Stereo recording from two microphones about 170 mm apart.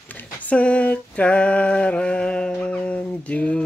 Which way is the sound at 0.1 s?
10° left (ahead or behind).